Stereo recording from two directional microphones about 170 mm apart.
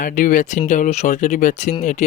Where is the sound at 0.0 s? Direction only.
50° left (ahead or behind).